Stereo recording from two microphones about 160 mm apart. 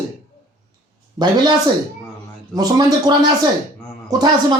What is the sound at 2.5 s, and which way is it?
Speech, 25° right (ahead or behind).